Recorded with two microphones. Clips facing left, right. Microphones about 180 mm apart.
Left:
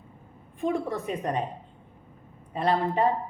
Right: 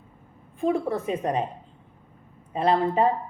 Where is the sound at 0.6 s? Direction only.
35° right (ahead or behind).